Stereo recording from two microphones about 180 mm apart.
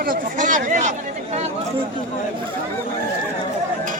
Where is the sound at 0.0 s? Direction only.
50° right (ahead or behind).